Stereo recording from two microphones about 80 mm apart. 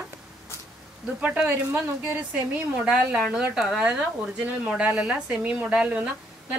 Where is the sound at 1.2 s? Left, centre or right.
Centre.